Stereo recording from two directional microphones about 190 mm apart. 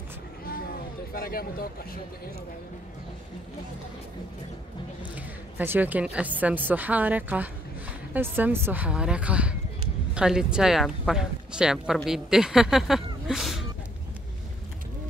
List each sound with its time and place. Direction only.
1.1 s speech: 55° left (ahead or behind)
5.1 s speech: 10° right (ahead or behind)